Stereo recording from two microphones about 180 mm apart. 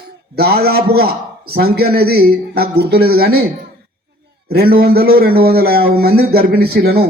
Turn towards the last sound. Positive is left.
turn(degrees=-60)  # may be behind; listen again after turning